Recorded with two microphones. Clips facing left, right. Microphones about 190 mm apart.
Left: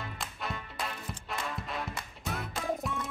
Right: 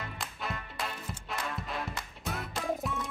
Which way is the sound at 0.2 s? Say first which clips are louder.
Even; centre (ahead or behind).